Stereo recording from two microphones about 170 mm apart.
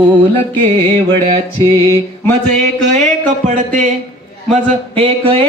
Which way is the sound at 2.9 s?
45° right (ahead or behind).